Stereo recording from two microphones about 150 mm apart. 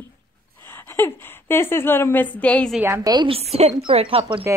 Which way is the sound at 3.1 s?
35° right (ahead or behind).